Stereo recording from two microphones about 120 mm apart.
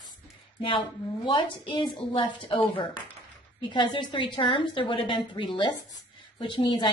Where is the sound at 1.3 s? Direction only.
40° left (ahead or behind).